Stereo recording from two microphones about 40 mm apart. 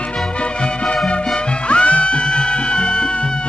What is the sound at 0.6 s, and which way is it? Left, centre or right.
Music, left.